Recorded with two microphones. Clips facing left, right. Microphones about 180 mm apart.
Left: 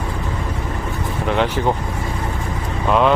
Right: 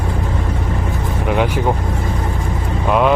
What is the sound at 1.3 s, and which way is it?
Speech, 10° right (ahead or behind).